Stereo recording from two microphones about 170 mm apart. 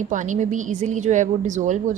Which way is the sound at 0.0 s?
50° right (ahead or behind).